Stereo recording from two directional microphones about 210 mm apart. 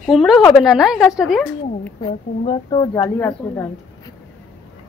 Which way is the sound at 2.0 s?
20° left (ahead or behind).